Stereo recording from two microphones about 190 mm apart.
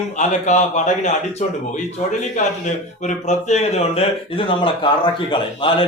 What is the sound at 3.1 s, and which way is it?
A man's voice, 35° left (ahead or behind).